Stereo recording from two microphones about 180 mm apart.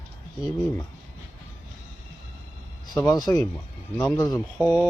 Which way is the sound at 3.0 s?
20° left (ahead or behind).